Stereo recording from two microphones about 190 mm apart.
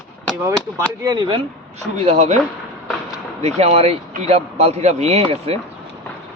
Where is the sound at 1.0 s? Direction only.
20° right (ahead or behind).